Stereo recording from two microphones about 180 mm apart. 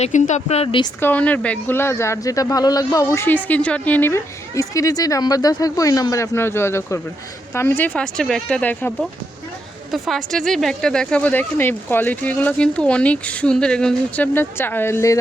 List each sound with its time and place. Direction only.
0.0 s speech: 40° left (ahead or behind)
1.0 s speech: 10° left (ahead or behind)